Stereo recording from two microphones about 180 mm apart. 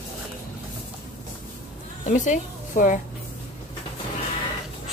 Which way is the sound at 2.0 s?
45° left (ahead or behind).